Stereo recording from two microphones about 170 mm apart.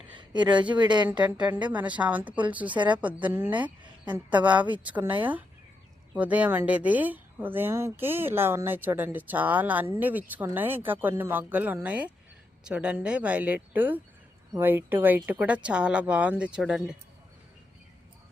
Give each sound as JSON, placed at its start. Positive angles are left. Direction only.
{"t": 0.2, "sound": "speech", "side_deg": -25}
{"t": 1.0, "sound": "speech", "side_deg": -10}
{"t": 6.1, "sound": "speech", "side_deg": -10}